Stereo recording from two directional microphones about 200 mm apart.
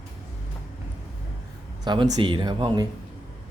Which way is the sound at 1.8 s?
25° right (ahead or behind).